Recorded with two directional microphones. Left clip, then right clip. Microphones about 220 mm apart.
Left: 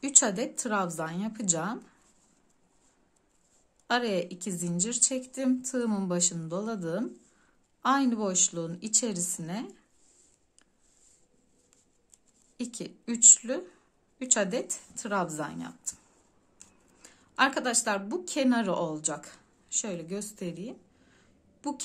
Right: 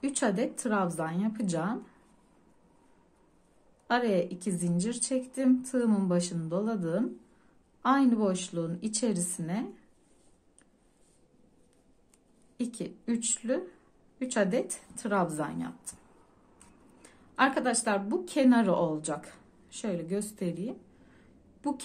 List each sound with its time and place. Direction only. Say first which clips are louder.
0.0 s a woman's voice: left 2 dB; 15° left (ahead or behind)
3.8 s a woman's voice: right 1 dB; 15° left (ahead or behind)
12.5 s a woman's voice: right 2 dB; 15° left (ahead or behind)
17.0 s speech: left 1 dB; 15° left (ahead or behind)